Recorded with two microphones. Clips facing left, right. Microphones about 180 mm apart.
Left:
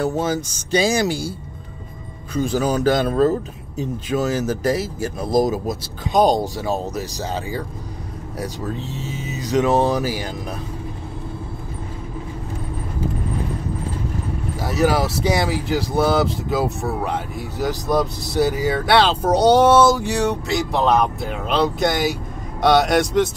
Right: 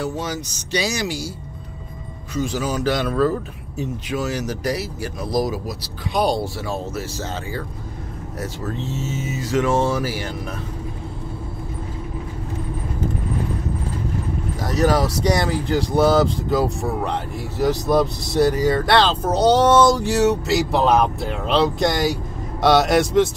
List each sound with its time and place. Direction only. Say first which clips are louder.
0.0 s speech: left 5 dB; 50° left (ahead or behind)
2.3 s speech: left 3 dB; 55° left (ahead or behind)
7.0 s speech: left 2 dB; 15° left (ahead or behind)
14.6 s speech: even; 5° left (ahead or behind)